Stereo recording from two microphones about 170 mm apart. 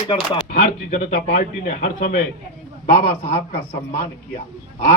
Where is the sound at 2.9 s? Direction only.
35° left (ahead or behind).